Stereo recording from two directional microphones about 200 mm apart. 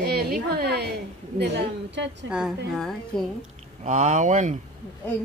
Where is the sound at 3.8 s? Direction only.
35° right (ahead or behind).